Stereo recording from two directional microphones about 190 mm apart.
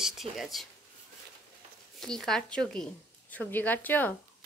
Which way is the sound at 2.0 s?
Centre (ahead or behind).